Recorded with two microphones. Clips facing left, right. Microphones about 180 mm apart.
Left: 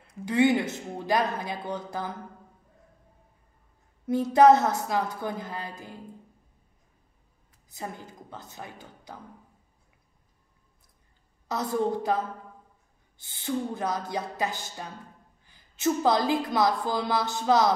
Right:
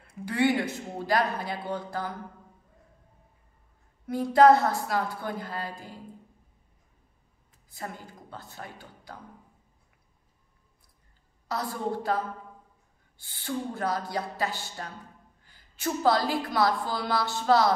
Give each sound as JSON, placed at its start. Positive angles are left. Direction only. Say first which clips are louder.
{"t": 0.2, "sound": "a woman's voice", "louder": "left 3 dB", "side_deg": 20}
{"t": 4.1, "sound": "a woman's voice", "louder": "left 1 dB", "side_deg": 20}
{"t": 7.7, "sound": "a woman's voice", "louder": "left 1 dB", "side_deg": 20}
{"t": 11.4, "sound": "a woman's voice", "louder": "left 4 dB", "side_deg": 20}
{"t": 13.2, "sound": "a woman's voice", "louder": "left 3 dB", "side_deg": 20}